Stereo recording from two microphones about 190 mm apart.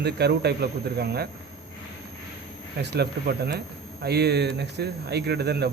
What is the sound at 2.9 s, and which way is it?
A man's voice, 60° right (ahead or behind).